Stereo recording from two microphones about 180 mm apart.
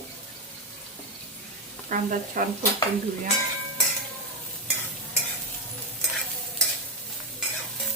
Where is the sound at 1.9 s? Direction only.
50° right (ahead or behind).